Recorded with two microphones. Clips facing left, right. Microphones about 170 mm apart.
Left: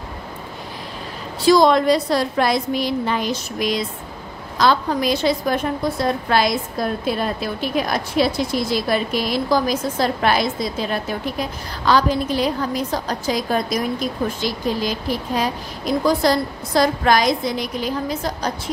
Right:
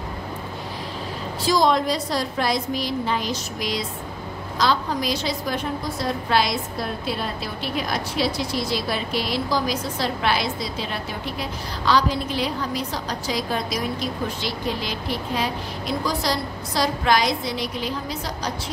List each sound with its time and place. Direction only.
1.4 s a woman's voice: 65° left (ahead or behind); by 18.5 s 50° left (ahead or behind)